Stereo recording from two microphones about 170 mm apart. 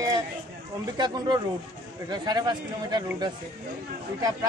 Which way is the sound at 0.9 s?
25° right (ahead or behind).